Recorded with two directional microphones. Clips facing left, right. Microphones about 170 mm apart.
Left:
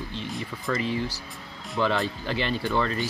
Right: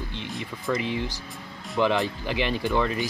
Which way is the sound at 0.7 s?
15° right (ahead or behind).